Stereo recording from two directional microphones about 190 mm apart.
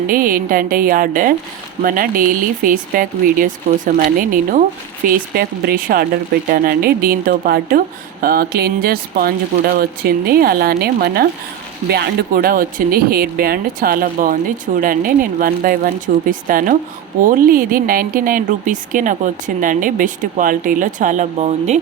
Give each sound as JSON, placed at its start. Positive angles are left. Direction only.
{"t": 0.1, "sound": "speech", "side_deg": -50}